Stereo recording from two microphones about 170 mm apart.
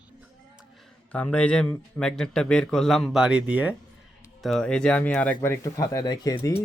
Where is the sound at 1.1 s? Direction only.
5° left (ahead or behind).